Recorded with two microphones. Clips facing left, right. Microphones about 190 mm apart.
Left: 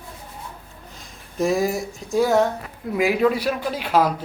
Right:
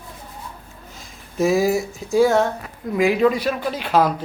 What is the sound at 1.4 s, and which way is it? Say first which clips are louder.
Speech: right 3 dB; 5° right (ahead or behind).